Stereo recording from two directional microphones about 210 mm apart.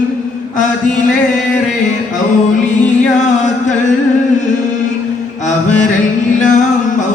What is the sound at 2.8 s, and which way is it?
Music, 35° left (ahead or behind).